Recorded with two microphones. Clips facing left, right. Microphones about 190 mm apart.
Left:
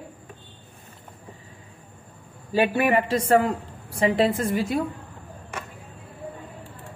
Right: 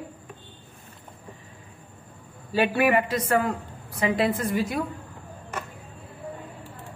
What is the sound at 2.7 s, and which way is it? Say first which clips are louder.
Speech: left 1 dB; 25° left (ahead or behind).